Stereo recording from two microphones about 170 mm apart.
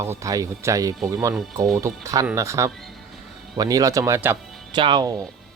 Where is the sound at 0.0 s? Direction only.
15° right (ahead or behind).